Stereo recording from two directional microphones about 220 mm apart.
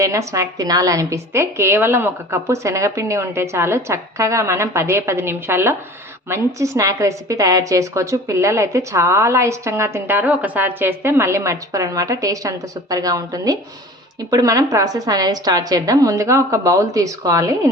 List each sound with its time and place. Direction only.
0.0 s a woman's voice: 15° right (ahead or behind)